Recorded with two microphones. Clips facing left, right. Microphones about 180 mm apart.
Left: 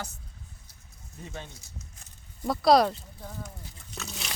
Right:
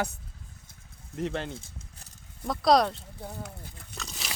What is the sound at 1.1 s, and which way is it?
Speech, 90° right.